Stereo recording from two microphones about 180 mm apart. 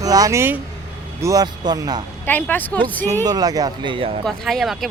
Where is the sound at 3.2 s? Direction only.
20° right (ahead or behind).